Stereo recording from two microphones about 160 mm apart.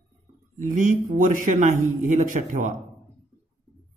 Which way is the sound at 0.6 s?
50° right (ahead or behind).